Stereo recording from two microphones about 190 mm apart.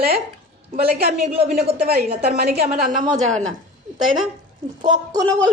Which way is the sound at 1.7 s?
55° right (ahead or behind).